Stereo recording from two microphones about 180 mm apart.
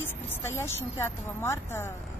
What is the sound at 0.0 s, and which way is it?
Speech, 10° left (ahead or behind).